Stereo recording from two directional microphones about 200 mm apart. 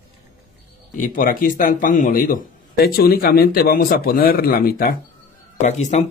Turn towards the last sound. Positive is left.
turn(degrees=35)  # may be behind; listen again after turning